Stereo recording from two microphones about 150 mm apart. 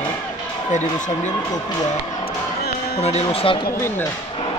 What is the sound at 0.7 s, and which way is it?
Speech, 50° left (ahead or behind).